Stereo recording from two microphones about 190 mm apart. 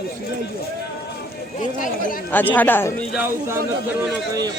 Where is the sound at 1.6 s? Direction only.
45° left (ahead or behind).